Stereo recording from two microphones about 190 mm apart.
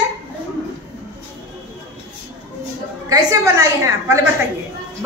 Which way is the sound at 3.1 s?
15° right (ahead or behind).